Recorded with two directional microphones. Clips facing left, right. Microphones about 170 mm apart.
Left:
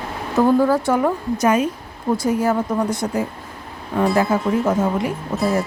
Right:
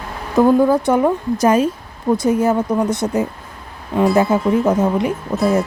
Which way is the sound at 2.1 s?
20° right (ahead or behind).